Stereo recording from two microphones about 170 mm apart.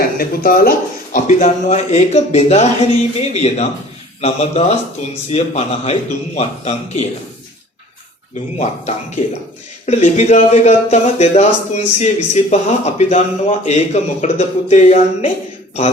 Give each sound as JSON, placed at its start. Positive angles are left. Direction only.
{"t": 0.2, "sound": "speech", "side_deg": 60}
{"t": 1.1, "sound": "speech", "side_deg": 50}
{"t": 8.5, "sound": "speech", "side_deg": 40}